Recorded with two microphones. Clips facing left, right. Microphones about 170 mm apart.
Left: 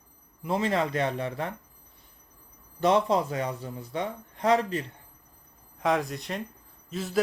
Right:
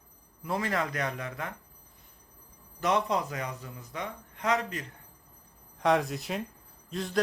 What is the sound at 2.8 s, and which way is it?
A man's voice, 30° left (ahead or behind).